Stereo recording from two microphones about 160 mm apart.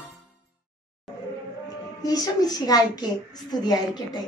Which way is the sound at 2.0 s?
25° left (ahead or behind).